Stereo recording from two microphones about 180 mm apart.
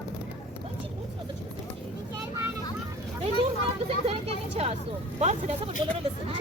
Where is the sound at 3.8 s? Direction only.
35° right (ahead or behind).